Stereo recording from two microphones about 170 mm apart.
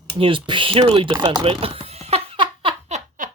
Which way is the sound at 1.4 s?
35° right (ahead or behind).